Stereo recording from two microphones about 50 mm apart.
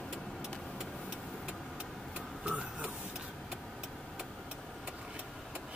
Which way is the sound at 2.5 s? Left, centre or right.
Right.